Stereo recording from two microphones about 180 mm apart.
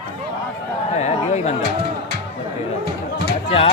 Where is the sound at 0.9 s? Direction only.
40° left (ahead or behind).